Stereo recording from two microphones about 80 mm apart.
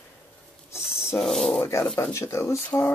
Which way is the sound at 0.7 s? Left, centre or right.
Left.